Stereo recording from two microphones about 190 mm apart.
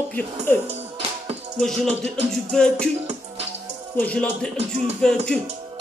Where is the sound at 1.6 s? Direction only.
Centre (ahead or behind).